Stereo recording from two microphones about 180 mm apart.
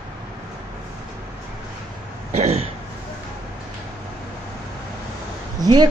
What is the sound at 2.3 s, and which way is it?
Throat clearing, 35° right (ahead or behind).